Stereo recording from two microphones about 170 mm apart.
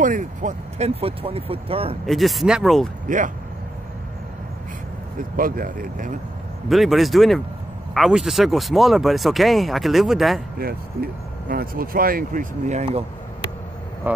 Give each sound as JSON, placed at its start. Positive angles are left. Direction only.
{"t": 0.0, "sound": "speech", "side_deg": -50}
{"t": 2.0, "sound": "speech", "side_deg": 0}
{"t": 5.3, "sound": "speech", "side_deg": -55}
{"t": 6.7, "sound": "speech", "side_deg": 0}
{"t": 10.6, "sound": "speech", "side_deg": -60}
{"t": 14.0, "sound": "speech", "side_deg": -10}